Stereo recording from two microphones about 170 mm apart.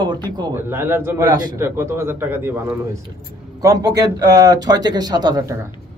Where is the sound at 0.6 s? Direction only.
15° right (ahead or behind).